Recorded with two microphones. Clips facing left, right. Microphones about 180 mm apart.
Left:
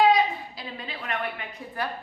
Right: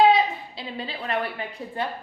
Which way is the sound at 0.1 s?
30° right (ahead or behind).